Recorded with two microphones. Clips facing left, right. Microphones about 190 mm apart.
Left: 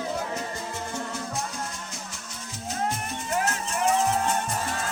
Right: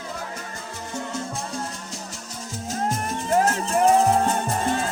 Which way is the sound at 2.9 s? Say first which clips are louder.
Right 7 dB; 40° right (ahead or behind).